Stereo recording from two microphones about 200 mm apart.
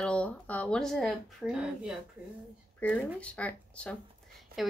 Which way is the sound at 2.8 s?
5° left (ahead or behind).